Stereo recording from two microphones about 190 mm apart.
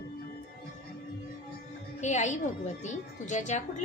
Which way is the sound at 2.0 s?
40° left (ahead or behind).